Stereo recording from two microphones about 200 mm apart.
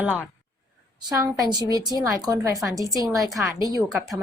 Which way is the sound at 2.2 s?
20° right (ahead or behind).